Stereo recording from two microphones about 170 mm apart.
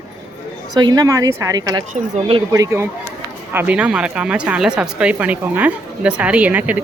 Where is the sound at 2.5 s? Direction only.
15° right (ahead or behind).